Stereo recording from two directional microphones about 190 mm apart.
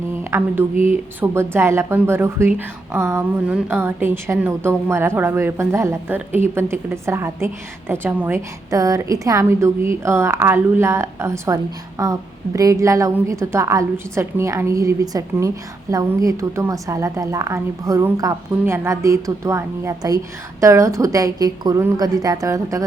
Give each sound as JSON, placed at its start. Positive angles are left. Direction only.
{"t": 0.1, "sound": "a woman's voice", "side_deg": -10}